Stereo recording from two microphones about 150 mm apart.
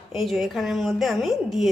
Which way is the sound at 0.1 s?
Centre (ahead or behind).